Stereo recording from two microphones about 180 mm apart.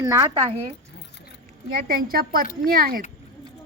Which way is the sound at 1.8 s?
55° right (ahead or behind).